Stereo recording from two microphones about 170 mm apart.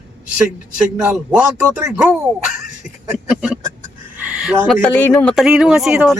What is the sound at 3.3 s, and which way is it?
Speech, 5° right (ahead or behind).